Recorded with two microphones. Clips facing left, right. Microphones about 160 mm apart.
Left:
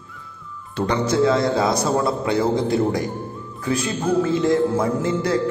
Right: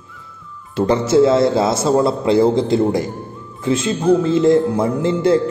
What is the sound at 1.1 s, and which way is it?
A man's voice, 25° right (ahead or behind).